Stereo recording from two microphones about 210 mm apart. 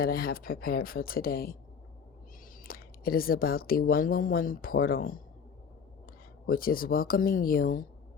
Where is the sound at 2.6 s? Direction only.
45° left (ahead or behind).